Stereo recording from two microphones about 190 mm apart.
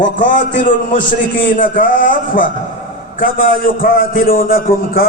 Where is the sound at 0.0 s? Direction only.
40° left (ahead or behind).